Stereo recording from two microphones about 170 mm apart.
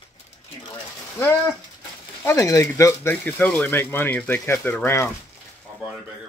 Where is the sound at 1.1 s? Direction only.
15° left (ahead or behind).